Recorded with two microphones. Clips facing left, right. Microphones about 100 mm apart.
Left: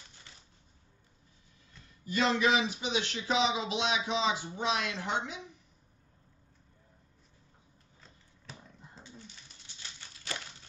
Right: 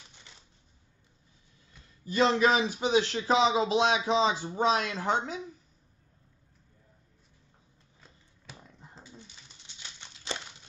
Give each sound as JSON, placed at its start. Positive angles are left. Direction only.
{"t": 2.0, "sound": "speech", "side_deg": -30}
{"t": 9.8, "sound": "crumpling", "side_deg": -20}